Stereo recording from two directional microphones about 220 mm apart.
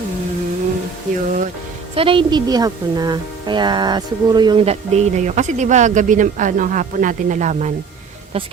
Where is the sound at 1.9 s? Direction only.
25° right (ahead or behind).